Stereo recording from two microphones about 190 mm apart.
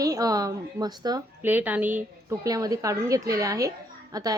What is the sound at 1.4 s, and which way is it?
A woman's voice, 10° right (ahead or behind).